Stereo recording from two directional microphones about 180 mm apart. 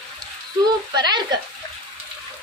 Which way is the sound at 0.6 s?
25° right (ahead or behind).